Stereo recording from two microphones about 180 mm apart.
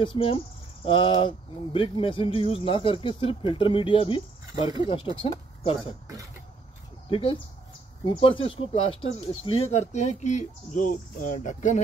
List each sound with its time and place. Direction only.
0.0 s speech: 30° left (ahead or behind)
7.1 s speech: 30° left (ahead or behind)